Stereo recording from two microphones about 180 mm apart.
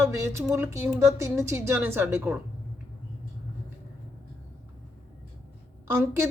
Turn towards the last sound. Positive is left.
turn(degrees=-15)  # may be behind; listen again after turning